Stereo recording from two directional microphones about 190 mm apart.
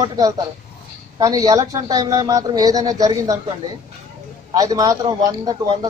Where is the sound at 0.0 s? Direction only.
20° right (ahead or behind).